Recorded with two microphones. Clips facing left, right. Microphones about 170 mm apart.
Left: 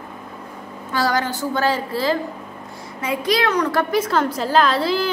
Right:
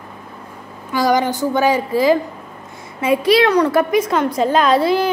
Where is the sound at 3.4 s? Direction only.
30° right (ahead or behind).